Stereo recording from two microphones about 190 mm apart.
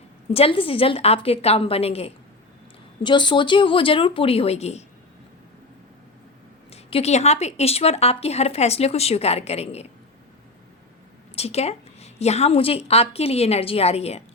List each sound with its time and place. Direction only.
0.3 s a woman's voice: 30° left (ahead or behind)
6.7 s a woman's voice: 35° left (ahead or behind)
11.3 s a woman's voice: 35° left (ahead or behind)